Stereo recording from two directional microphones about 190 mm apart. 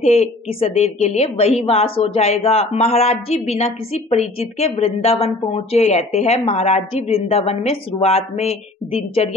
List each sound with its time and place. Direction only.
0.0 s a woman's voice: 35° left (ahead or behind)